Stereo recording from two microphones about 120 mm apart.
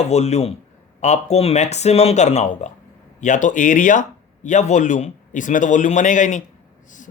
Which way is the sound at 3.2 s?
90° left.